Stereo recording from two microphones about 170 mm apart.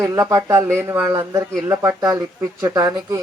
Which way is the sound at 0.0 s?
20° right (ahead or behind).